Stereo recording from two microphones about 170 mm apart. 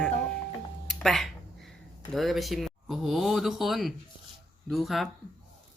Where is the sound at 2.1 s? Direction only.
Centre (ahead or behind).